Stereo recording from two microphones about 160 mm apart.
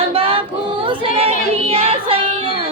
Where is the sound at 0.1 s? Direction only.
35° right (ahead or behind).